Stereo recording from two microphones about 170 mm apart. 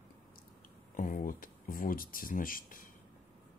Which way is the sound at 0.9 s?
50° left (ahead or behind).